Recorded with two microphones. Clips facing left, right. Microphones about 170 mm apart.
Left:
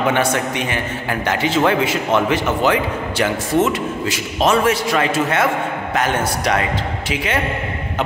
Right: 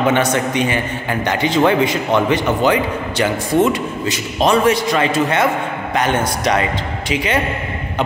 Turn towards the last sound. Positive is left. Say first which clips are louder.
# right 2 dB
turn(degrees=0)  # may be behind; listen again after turning